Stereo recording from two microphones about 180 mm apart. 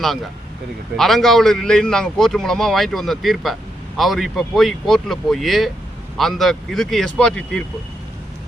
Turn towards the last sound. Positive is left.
turn(degrees=5)  # may be behind; listen again after turning